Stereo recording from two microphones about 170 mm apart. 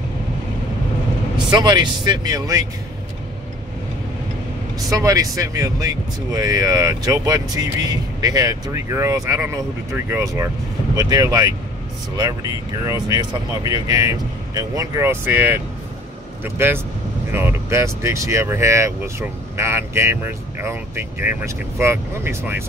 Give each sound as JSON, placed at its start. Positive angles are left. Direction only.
{"t": 1.5, "sound": "speech", "side_deg": -25}
{"t": 4.8, "sound": "speech", "side_deg": -20}